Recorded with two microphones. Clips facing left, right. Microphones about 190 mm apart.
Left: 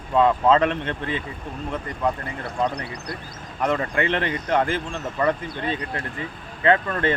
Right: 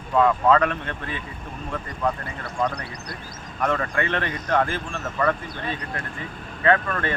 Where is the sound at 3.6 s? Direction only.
20° left (ahead or behind).